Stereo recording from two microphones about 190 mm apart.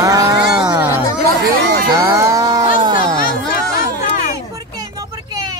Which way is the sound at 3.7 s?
45° left (ahead or behind).